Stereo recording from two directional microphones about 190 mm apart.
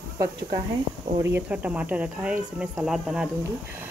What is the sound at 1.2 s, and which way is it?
Speech, 10° right (ahead or behind).